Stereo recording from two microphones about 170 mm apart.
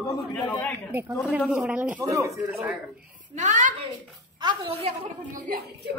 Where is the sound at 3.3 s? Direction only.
45° right (ahead or behind).